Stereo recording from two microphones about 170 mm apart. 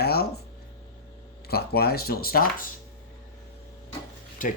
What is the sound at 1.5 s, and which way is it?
Speech, 65° left (ahead or behind).